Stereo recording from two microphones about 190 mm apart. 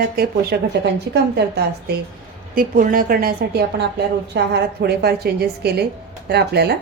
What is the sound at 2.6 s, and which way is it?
A woman's voice, 50° right (ahead or behind).